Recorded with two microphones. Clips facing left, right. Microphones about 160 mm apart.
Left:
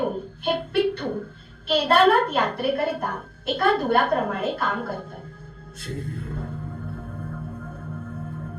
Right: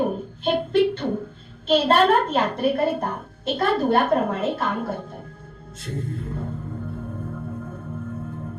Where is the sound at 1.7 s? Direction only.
20° right (ahead or behind).